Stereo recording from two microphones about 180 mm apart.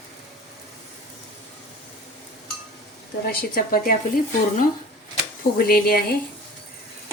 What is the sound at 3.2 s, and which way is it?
Speech, 55° left (ahead or behind).